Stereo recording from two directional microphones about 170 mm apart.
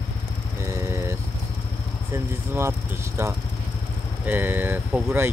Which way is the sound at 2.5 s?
15° right (ahead or behind).